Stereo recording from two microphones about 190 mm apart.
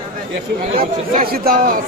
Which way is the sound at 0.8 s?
50° right (ahead or behind).